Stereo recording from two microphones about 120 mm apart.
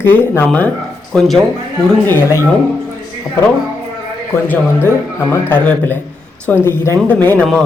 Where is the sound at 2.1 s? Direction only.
20° left (ahead or behind).